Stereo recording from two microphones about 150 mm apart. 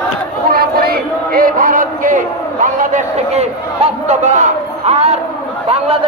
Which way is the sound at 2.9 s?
45° right (ahead or behind).